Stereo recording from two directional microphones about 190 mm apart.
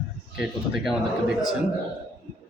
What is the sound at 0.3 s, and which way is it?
Speech, 5° right (ahead or behind).